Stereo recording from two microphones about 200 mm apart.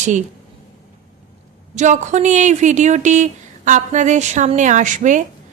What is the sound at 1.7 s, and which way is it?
A woman's voice, 35° right (ahead or behind).